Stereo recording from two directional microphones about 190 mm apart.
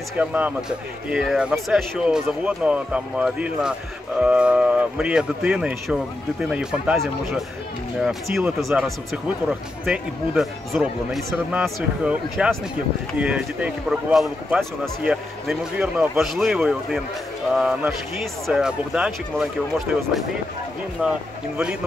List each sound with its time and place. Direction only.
0.2 s speech: 10° right (ahead or behind)
21.0 s speech: 5° right (ahead or behind)